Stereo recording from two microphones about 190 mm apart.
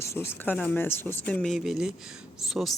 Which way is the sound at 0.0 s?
15° left (ahead or behind).